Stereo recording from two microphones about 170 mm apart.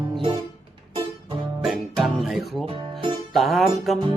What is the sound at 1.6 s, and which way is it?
Music, centre (ahead or behind).